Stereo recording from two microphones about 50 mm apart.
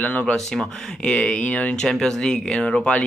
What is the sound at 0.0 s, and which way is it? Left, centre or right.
Speech, left.